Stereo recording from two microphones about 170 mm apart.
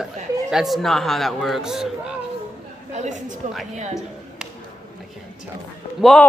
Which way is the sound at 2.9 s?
45° right (ahead or behind).